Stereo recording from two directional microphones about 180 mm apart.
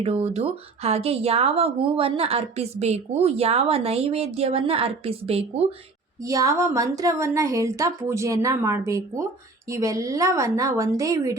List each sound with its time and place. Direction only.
0.0 s a woman's voice: 35° right (ahead or behind)
6.2 s speech: 20° right (ahead or behind)